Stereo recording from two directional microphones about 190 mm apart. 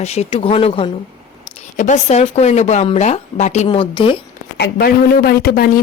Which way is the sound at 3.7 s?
25° left (ahead or behind).